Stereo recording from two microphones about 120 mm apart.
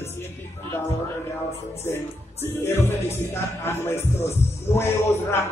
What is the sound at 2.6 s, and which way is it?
Speech, 20° left (ahead or behind).